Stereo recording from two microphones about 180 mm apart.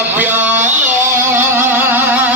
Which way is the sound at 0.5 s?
40° right (ahead or behind).